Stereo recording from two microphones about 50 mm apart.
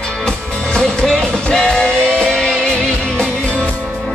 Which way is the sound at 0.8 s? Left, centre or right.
Centre.